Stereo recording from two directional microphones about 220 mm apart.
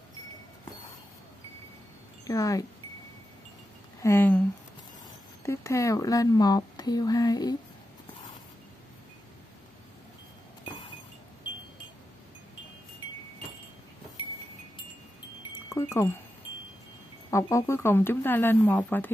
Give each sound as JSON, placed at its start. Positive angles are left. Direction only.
{"t": 2.2, "sound": "speech", "side_deg": 15}
{"t": 4.0, "sound": "speech", "side_deg": 10}
{"t": 15.7, "sound": "wind chime", "side_deg": 15}
{"t": 17.3, "sound": "speech", "side_deg": 15}